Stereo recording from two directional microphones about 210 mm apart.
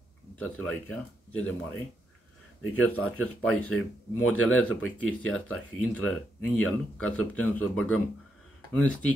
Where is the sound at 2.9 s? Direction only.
5° left (ahead or behind).